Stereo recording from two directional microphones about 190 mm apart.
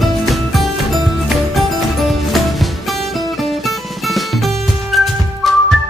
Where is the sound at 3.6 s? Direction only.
Centre (ahead or behind).